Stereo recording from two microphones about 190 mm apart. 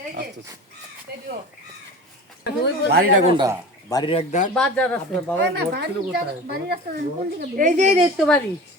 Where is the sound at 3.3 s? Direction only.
25° right (ahead or behind).